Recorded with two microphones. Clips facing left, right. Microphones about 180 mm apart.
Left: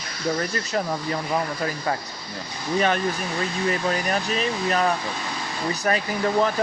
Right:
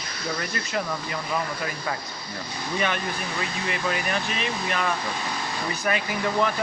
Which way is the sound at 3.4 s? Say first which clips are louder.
Left 6 dB; 40° left (ahead or behind).